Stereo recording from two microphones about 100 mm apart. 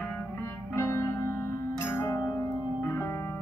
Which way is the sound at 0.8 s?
25° left (ahead or behind).